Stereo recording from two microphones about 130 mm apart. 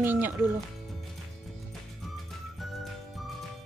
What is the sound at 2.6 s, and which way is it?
Music, centre (ahead or behind).